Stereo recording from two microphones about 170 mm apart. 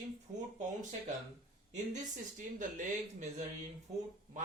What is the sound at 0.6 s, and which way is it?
Speech, 45° right (ahead or behind).